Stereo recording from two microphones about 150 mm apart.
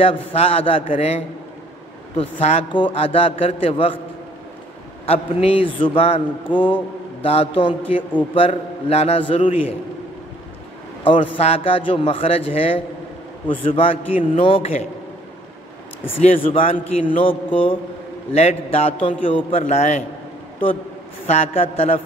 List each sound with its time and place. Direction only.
0.0 s a man's voice: 40° left (ahead or behind)
2.4 s a man's voice: 40° left (ahead or behind)
5.0 s a man's voice: 40° left (ahead or behind)
11.1 s a man's voice: 40° left (ahead or behind)
16.2 s a man's voice: 40° left (ahead or behind)
19.6 s a man's voice: 50° left (ahead or behind)
21.3 s a man's voice: 45° left (ahead or behind)